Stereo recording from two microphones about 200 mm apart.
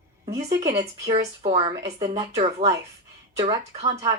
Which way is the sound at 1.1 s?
35° right (ahead or behind).